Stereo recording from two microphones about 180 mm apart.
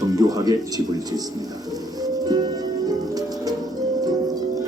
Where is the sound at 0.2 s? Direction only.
20° right (ahead or behind).